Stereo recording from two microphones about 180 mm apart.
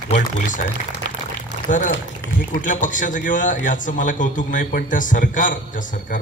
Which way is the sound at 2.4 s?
45° left (ahead or behind).